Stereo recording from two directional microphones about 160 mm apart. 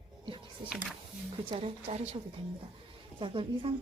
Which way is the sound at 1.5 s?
35° right (ahead or behind).